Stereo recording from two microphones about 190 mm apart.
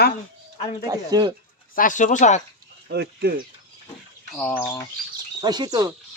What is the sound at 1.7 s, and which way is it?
Speech, 45° left (ahead or behind).